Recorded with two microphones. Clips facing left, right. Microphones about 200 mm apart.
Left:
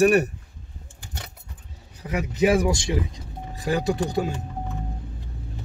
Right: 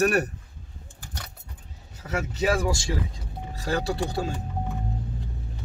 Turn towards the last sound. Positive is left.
turn(degrees=15)  # may be behind; listen again after turning